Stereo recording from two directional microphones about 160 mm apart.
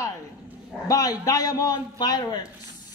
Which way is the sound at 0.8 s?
20° left (ahead or behind).